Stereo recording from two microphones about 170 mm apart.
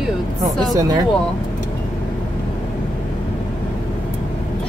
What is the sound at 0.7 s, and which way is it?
Speech, 20° right (ahead or behind).